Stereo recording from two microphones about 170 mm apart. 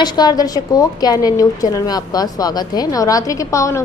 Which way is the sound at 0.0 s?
25° left (ahead or behind).